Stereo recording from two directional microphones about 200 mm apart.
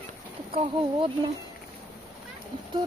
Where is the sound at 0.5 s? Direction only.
25° right (ahead or behind).